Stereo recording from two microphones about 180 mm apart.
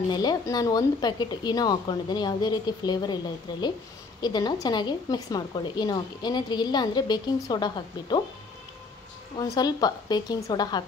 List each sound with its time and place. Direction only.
0.1 s a woman's voice: 20° left (ahead or behind)
4.2 s a woman's voice: 25° left (ahead or behind)
9.6 s a woman's voice: 20° left (ahead or behind)